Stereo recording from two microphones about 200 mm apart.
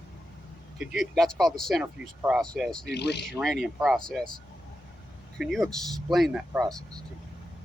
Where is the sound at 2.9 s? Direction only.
55° left (ahead or behind).